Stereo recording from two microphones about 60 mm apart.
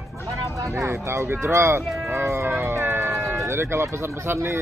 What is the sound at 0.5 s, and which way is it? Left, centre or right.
Speech, right.